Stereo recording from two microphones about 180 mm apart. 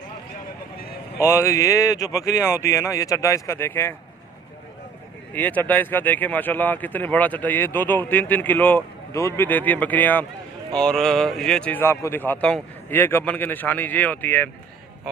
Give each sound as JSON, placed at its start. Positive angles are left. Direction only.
{"t": 1.2, "sound": "speech", "side_deg": 15}
{"t": 5.3, "sound": "speech", "side_deg": 10}